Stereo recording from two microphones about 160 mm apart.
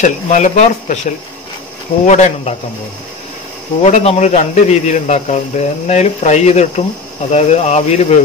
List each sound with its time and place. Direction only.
0.0 s a man's voice: 50° left (ahead or behind)
2.0 s a man's voice: 45° left (ahead or behind)
3.8 s a man's voice: 40° left (ahead or behind)